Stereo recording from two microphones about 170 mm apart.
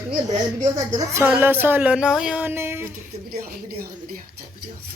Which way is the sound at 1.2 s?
10° right (ahead or behind).